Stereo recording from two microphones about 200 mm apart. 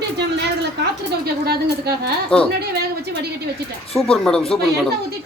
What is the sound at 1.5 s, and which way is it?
Speech, 55° right (ahead or behind).